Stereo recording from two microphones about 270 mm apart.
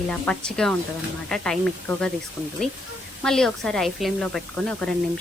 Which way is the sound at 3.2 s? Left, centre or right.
Centre.